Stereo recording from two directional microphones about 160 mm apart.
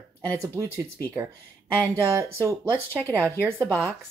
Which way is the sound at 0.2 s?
20° right (ahead or behind).